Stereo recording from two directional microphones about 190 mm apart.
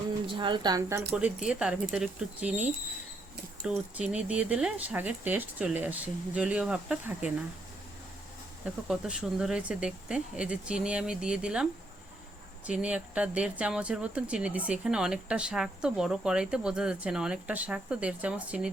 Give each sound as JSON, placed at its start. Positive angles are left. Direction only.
{"t": 0.3, "sound": "speech", "side_deg": -25}
{"t": 1.1, "sound": "speech", "side_deg": -5}
{"t": 3.6, "sound": "speech", "side_deg": -5}
{"t": 8.6, "sound": "speech", "side_deg": -5}